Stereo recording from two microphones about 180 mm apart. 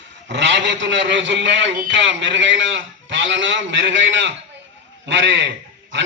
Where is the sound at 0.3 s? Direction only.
80° right.